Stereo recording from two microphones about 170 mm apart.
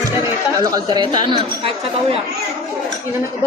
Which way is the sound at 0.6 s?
20° right (ahead or behind).